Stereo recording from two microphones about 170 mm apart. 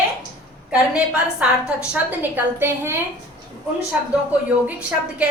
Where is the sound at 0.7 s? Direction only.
5° right (ahead or behind).